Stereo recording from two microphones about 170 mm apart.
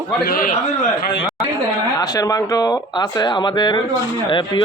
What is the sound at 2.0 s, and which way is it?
A man's voice, 20° left (ahead or behind).